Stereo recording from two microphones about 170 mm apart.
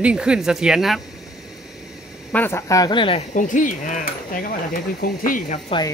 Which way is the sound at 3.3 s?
50° left (ahead or behind).